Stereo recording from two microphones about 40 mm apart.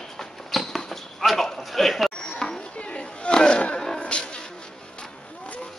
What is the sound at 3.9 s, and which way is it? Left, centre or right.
Music, left.